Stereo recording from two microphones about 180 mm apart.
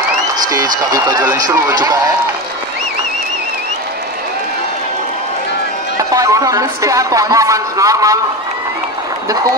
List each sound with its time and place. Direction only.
0.5 s a man's voice: 20° right (ahead or behind)
5.9 s speech: 20° right (ahead or behind)